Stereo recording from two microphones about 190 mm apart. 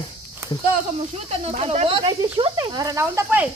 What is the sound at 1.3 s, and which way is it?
Speech, 30° right (ahead or behind).